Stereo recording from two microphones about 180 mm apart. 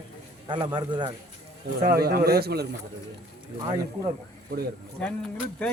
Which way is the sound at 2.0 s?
60° right (ahead or behind).